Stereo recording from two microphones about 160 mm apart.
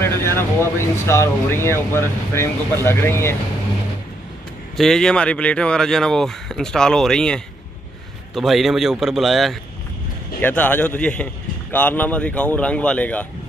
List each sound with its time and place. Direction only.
0.0 s speech: 15° left (ahead or behind)
4.7 s speech: 5° left (ahead or behind)